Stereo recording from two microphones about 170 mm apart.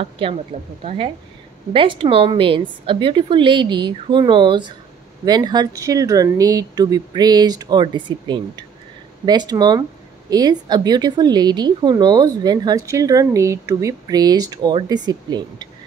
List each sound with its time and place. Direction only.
0.0 s a woman's voice: 35° right (ahead or behind)